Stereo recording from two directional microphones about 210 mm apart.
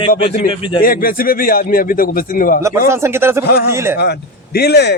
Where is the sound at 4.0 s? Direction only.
50° left (ahead or behind).